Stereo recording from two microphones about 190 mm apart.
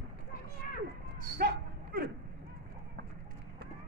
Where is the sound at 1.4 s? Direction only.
55° right (ahead or behind).